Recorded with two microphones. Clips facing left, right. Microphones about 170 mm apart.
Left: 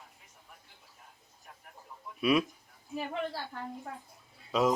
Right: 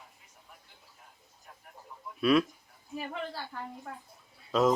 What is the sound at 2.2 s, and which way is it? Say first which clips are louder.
Speech: right 2 dB; 15° left (ahead or behind).